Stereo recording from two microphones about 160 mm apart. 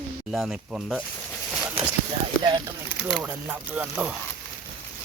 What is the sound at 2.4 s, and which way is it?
Speech, 30° right (ahead or behind).